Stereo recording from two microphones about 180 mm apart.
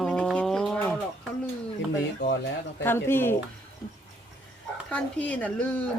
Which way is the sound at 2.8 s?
10° left (ahead or behind).